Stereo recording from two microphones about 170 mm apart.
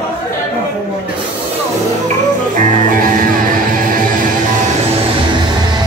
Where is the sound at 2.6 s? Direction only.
55° right (ahead or behind).